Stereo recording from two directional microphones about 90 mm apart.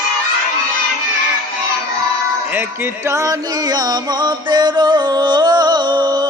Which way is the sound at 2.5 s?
25° right (ahead or behind).